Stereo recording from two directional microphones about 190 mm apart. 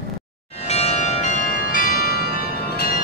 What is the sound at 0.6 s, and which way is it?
Bell, 35° left (ahead or behind).